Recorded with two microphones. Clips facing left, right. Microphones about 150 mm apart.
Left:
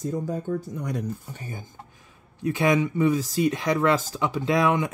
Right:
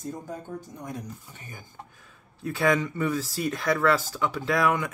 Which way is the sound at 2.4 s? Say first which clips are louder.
Left 3 dB; 15° left (ahead or behind).